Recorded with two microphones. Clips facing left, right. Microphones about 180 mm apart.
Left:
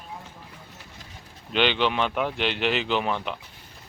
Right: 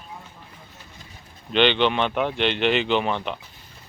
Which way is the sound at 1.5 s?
5° left (ahead or behind).